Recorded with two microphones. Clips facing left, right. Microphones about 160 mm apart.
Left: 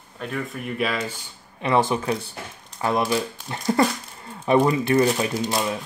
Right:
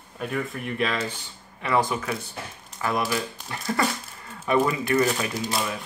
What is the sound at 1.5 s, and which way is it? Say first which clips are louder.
Speech: left 3 dB; 25° left (ahead or behind).